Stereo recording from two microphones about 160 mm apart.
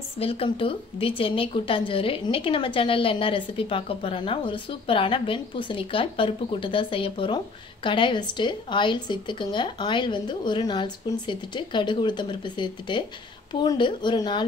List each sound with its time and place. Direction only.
0.2 s a woman's voice: 35° left (ahead or behind)